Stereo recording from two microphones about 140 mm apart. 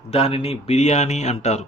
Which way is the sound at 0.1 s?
45° left (ahead or behind).